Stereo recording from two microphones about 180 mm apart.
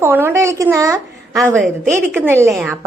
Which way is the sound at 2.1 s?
10° right (ahead or behind).